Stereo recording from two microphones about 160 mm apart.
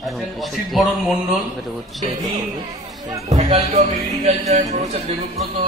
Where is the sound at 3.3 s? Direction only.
40° right (ahead or behind).